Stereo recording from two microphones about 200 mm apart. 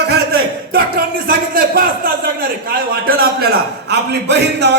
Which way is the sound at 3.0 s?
50° right (ahead or behind).